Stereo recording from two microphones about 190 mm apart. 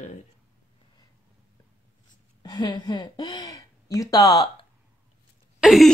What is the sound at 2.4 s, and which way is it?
Speech, 20° left (ahead or behind).